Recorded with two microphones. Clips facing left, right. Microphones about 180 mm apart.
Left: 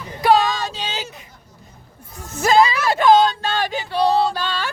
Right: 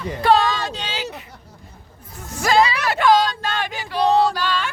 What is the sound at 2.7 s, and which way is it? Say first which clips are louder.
Speech: left 3 dB; 40° left (ahead or behind).